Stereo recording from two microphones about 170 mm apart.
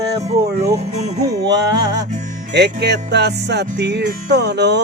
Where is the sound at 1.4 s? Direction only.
85° right.